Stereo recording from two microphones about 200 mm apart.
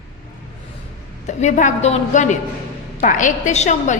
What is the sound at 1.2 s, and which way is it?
A woman's voice, 35° left (ahead or behind).